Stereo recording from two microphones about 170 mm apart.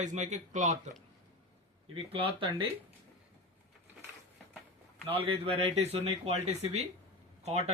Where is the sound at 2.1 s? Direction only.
30° right (ahead or behind).